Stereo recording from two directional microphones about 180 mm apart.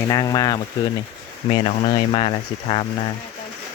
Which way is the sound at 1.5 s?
35° left (ahead or behind).